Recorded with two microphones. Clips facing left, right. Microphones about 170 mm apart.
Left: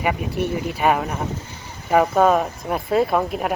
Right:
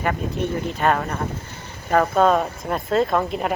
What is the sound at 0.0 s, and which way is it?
Speech, 10° left (ahead or behind).